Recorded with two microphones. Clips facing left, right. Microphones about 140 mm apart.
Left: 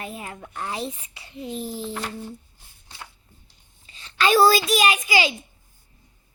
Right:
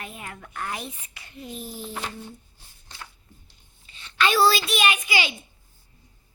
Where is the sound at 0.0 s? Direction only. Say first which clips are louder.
Left 4 dB; 30° left (ahead or behind).